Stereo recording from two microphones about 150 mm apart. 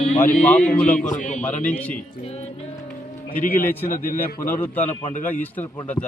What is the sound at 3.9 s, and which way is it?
Speech, 70° left (ahead or behind).